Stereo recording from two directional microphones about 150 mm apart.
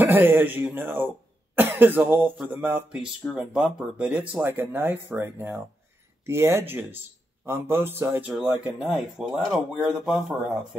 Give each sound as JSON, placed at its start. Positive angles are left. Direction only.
{"t": 0.0, "sound": "speech", "side_deg": -15}
{"t": 1.5, "sound": "cough", "side_deg": -15}
{"t": 2.5, "sound": "speech", "side_deg": -10}
{"t": 8.3, "sound": "speech", "side_deg": -5}